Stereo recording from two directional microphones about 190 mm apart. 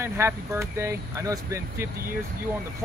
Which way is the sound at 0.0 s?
15° right (ahead or behind).